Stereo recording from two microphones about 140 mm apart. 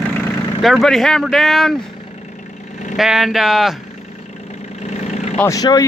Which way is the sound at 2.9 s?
Centre (ahead or behind).